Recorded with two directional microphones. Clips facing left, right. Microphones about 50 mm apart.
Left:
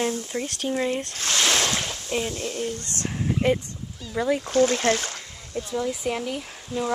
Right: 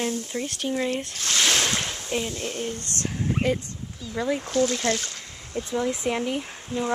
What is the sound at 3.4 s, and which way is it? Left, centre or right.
Speech, left.